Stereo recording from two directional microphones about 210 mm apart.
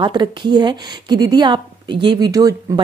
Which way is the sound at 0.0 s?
20° right (ahead or behind).